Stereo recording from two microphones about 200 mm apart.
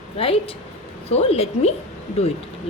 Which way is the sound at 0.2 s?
30° left (ahead or behind).